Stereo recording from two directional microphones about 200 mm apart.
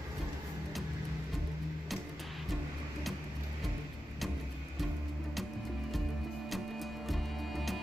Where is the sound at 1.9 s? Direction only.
Centre (ahead or behind).